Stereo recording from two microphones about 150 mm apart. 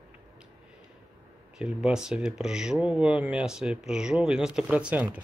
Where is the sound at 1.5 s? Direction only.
5° right (ahead or behind).